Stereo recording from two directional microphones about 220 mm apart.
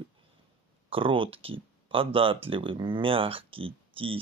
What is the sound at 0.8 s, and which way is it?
Speech, 25° right (ahead or behind).